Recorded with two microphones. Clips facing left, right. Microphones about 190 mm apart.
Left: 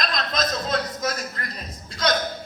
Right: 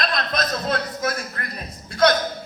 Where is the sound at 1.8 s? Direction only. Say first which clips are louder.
Right 8 dB; 60° right (ahead or behind).